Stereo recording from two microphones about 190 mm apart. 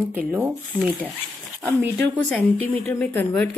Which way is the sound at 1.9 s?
10° left (ahead or behind).